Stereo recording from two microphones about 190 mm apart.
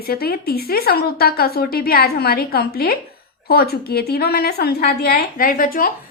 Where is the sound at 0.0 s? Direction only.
55° left (ahead or behind).